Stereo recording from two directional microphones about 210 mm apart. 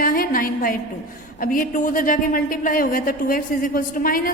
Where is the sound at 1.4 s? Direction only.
40° left (ahead or behind).